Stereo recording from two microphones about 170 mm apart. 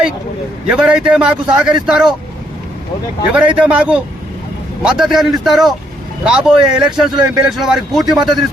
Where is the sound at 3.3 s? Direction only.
5° right (ahead or behind).